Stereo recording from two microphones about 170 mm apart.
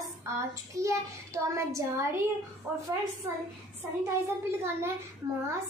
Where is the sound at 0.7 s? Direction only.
15° right (ahead or behind).